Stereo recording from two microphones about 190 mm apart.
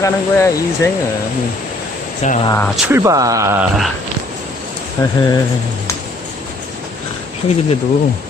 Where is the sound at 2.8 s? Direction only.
10° right (ahead or behind).